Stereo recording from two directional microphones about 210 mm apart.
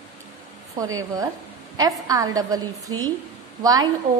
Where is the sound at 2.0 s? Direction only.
15° right (ahead or behind).